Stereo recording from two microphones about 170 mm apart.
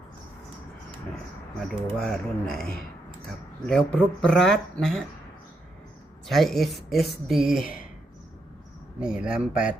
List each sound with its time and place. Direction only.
1.6 s speech: 5° left (ahead or behind)
3.7 s speech: 5° left (ahead or behind)
6.2 s speech: centre (ahead or behind)
9.0 s speech: 5° right (ahead or behind)